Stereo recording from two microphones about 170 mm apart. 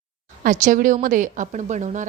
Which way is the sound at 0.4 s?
50° right (ahead or behind).